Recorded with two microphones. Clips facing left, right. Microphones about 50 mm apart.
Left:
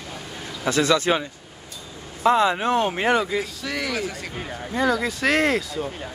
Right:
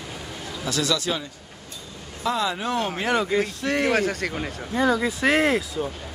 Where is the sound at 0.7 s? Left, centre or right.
Left.